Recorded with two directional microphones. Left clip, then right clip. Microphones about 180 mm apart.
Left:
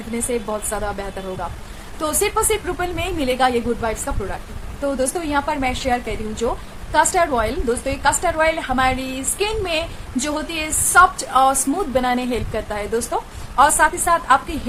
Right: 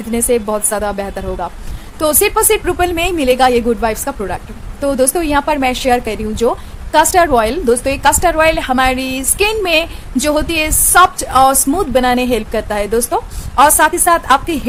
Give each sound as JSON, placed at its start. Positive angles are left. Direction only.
{"t": 0.1, "sound": "a woman's voice", "side_deg": -45}